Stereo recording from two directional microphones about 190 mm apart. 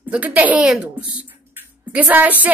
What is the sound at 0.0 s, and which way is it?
A woman's voice, 10° right (ahead or behind).